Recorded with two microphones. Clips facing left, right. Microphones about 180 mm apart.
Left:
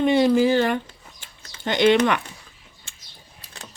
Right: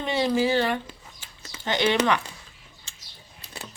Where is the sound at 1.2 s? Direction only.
50° left (ahead or behind).